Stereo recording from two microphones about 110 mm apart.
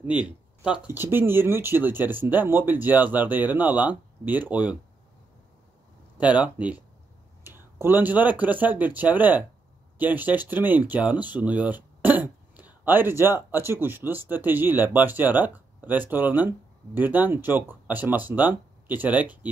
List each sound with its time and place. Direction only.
0.0 s speech: 10° right (ahead or behind)
6.1 s speech: 15° right (ahead or behind)